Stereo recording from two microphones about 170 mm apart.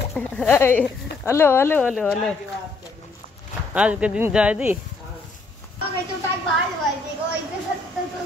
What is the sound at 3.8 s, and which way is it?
Speech, 5° right (ahead or behind).